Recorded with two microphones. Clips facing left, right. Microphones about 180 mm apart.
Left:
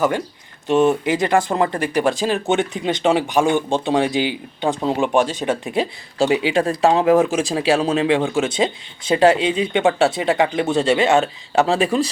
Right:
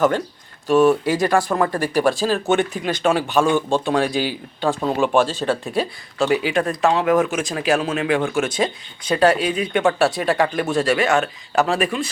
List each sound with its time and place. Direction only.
0.7 s speech: 20° left (ahead or behind); by 12.1 s 35° left (ahead or behind)